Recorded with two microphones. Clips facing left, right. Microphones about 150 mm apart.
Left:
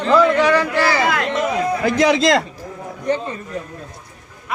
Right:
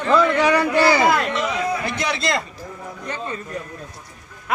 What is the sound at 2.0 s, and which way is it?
Speech, 90° left.